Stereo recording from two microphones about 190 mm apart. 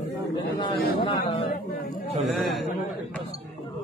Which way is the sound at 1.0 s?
25° left (ahead or behind).